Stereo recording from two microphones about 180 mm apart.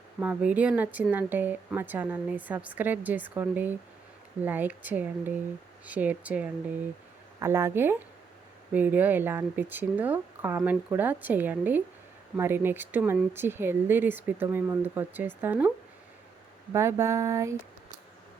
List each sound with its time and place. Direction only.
0.2 s speech: 10° right (ahead or behind)
16.7 s speech: 15° right (ahead or behind)